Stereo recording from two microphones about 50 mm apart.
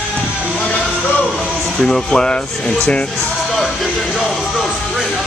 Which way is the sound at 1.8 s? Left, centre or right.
Centre.